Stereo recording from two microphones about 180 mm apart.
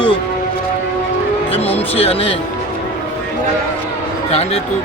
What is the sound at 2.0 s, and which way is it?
Speech, 35° left (ahead or behind).